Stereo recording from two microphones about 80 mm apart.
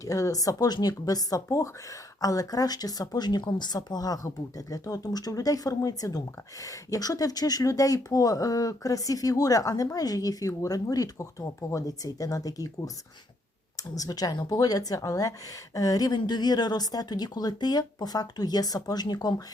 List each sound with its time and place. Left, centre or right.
0.0 s speech: left